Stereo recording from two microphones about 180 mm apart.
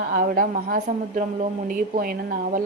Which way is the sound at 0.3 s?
50° right (ahead or behind).